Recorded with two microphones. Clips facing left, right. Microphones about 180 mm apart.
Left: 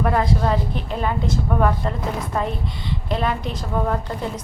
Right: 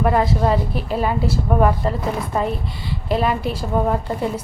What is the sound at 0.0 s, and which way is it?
A woman's voice, 5° right (ahead or behind).